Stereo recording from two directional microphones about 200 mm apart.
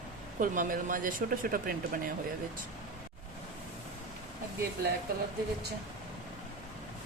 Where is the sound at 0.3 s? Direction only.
40° right (ahead or behind).